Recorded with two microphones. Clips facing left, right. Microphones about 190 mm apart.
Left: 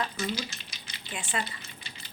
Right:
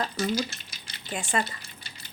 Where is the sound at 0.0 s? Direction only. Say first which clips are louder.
Right 5 dB; 40° right (ahead or behind).